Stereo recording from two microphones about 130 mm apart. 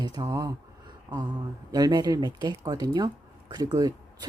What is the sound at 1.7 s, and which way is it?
Speech, 30° right (ahead or behind).